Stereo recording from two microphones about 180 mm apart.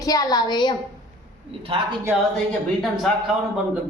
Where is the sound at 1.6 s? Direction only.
30° right (ahead or behind).